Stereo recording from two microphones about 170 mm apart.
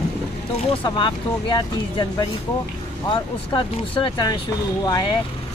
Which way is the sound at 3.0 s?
25° left (ahead or behind).